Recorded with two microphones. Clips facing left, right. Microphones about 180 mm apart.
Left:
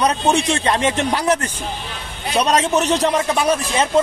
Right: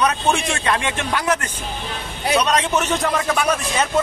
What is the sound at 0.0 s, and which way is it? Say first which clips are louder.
A man's voice: left 2 dB; 35° left (ahead or behind).